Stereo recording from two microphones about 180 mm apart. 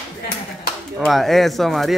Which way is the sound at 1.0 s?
Centre (ahead or behind).